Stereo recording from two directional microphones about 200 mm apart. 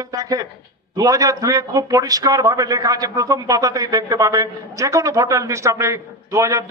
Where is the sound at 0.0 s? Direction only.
20° right (ahead or behind).